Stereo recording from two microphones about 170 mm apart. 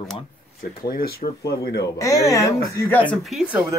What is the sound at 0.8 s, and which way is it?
Speech, 65° left (ahead or behind).